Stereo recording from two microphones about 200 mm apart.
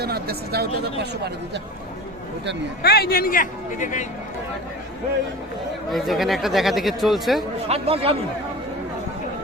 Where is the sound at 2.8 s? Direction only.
50° left (ahead or behind).